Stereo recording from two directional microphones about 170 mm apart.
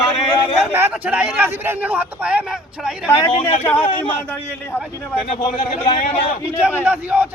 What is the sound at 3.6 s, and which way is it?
Speech, 10° left (ahead or behind).